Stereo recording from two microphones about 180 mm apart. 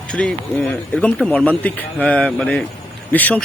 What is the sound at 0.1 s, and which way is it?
A man's voice, 5° left (ahead or behind).